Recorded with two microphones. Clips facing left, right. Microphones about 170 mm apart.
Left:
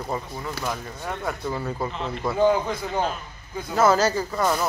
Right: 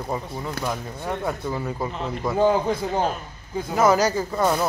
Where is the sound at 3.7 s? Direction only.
15° right (ahead or behind).